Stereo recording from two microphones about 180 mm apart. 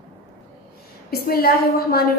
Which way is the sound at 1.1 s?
60° left (ahead or behind).